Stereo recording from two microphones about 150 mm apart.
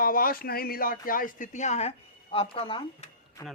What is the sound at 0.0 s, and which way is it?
Speech, 70° left (ahead or behind).